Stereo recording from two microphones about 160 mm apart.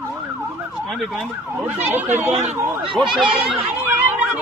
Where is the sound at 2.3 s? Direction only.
45° right (ahead or behind).